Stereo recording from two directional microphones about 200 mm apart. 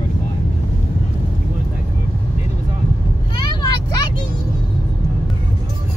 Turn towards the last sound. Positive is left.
turn(degrees=20)  # may be behind; listen again after turning